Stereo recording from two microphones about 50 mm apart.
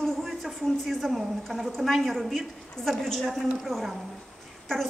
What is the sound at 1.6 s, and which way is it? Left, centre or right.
A woman's voice, centre.